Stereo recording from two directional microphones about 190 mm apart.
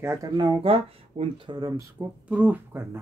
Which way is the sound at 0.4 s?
25° right (ahead or behind).